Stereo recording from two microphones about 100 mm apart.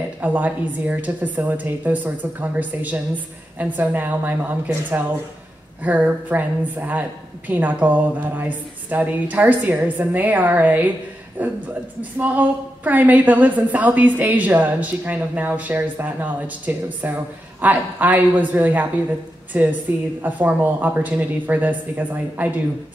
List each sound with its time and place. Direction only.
0.2 s a woman's voice: 15° right (ahead or behind)
5.9 s a woman's voice: 15° right (ahead or behind)